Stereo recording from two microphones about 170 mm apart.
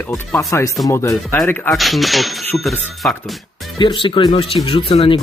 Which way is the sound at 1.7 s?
Centre (ahead or behind).